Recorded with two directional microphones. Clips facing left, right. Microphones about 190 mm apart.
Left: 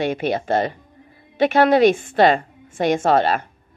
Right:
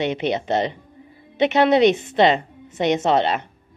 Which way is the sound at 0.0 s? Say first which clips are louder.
Left 1 dB; 20° right (ahead or behind).